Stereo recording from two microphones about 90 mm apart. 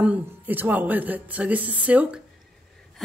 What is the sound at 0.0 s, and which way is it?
Speech, 15° right (ahead or behind).